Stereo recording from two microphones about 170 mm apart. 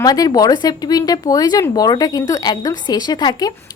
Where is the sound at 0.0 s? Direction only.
25° left (ahead or behind).